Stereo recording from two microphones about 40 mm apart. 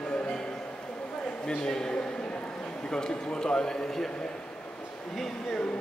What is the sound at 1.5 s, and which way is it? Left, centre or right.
A man's voice, centre.